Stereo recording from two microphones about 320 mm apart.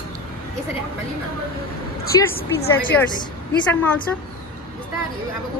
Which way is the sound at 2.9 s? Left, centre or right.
Centre.